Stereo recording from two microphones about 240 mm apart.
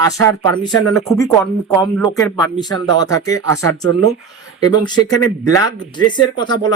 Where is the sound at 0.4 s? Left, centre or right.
Centre.